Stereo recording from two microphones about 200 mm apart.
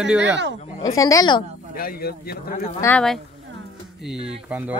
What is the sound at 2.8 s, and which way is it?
Speech, 10° left (ahead or behind).